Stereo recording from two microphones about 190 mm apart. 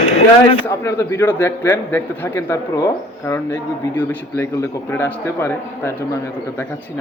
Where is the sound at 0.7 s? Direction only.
15° left (ahead or behind).